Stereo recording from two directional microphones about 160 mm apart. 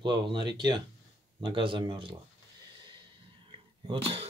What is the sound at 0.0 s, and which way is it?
Speech, 30° right (ahead or behind).